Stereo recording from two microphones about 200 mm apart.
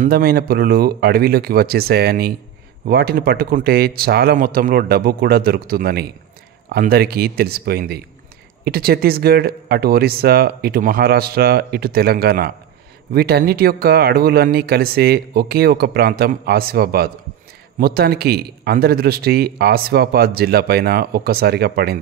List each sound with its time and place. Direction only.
0.0 s a man's voice: 50° right (ahead or behind)